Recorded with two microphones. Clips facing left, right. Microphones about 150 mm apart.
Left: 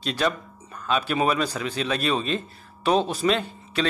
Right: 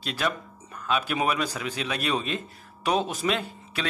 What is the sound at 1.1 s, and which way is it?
Speech, 35° left (ahead or behind).